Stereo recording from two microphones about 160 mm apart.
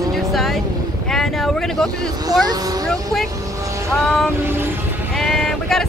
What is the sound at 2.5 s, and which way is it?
Speech, 25° right (ahead or behind).